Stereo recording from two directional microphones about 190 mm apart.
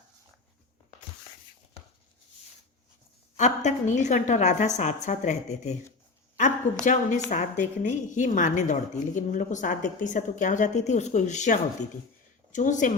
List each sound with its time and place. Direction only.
3.3 s a woman's voice: 40° left (ahead or behind)
6.8 s a woman's voice: 40° left (ahead or behind)